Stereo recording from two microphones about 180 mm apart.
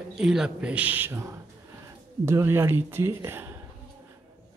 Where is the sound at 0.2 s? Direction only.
5° right (ahead or behind).